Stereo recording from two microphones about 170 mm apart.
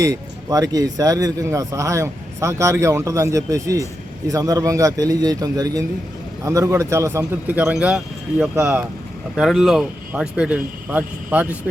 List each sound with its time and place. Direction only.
0.0 s a man's voice: 20° right (ahead or behind)